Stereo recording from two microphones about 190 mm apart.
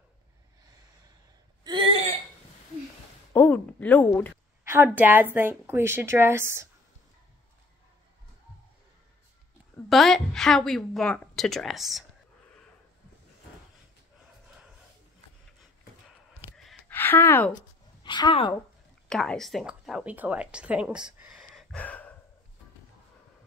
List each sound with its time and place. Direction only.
1.6 s a sound: 25° right (ahead or behind)
3.3 s speech: 10° left (ahead or behind)
4.6 s a woman's voice: 10° right (ahead or behind)
9.8 s a woman's voice: centre (ahead or behind)
16.5 s a sound: 5° left (ahead or behind)
18.0 s a woman's voice: 25° left (ahead or behind)
19.0 s a woman's voice: 5° left (ahead or behind)
21.2 s a sound: 5° right (ahead or behind)
21.7 s gasp: 5° left (ahead or behind)